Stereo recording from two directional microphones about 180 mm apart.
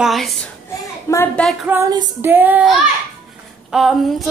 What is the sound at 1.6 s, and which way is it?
Female singing, 15° right (ahead or behind).